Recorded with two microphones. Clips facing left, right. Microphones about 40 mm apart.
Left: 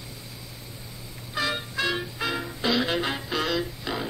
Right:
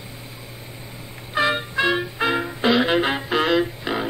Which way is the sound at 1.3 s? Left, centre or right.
Right.